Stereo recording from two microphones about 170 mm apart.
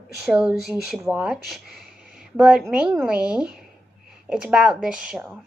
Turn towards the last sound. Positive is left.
turn(degrees=-5)  # may be behind; listen again after turning